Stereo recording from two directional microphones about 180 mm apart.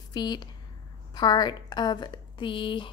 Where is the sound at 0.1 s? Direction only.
25° left (ahead or behind).